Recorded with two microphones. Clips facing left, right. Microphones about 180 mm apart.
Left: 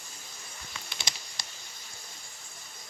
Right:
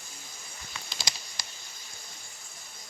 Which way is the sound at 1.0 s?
25° left (ahead or behind).